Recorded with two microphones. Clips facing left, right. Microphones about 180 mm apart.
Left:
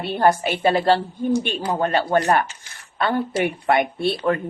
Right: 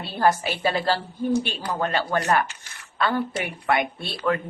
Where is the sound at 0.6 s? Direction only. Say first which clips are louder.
Left 6 dB; 30° left (ahead or behind).